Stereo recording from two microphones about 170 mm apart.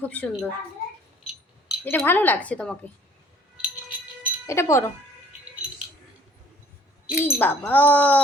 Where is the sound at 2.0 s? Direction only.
10° left (ahead or behind).